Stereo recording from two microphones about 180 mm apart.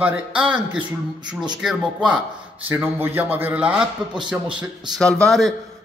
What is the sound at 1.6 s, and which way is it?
A man's voice, 5° right (ahead or behind).